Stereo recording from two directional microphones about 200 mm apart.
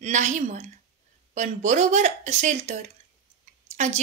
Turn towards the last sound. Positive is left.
turn(degrees=-35)  # may be behind; listen again after turning